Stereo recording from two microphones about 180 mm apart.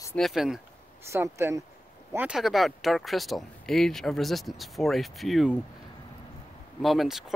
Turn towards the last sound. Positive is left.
turn(degrees=0)  # may be behind; listen again after turning